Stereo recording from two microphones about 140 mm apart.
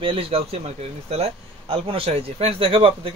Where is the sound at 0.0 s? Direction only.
40° right (ahead or behind).